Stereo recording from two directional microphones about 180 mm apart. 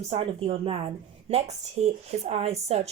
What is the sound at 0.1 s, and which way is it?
Speech, 35° right (ahead or behind).